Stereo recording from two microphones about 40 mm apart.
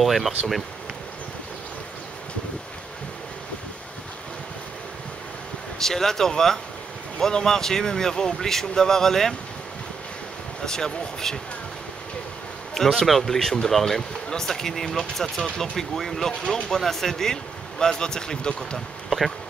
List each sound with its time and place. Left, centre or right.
0.0 s speech: centre
5.8 s speech: centre
10.6 s speech: centre
12.7 s speech: centre; by 18.8 s left
19.0 s bee: centre